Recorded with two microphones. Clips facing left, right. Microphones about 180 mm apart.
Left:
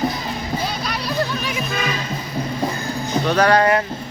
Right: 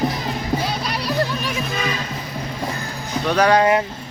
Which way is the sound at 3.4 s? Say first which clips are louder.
Right 1 dB; 15° right (ahead or behind).